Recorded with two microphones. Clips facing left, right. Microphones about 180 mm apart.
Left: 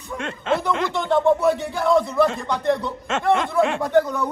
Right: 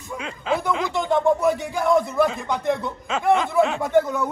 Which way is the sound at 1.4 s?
15° right (ahead or behind).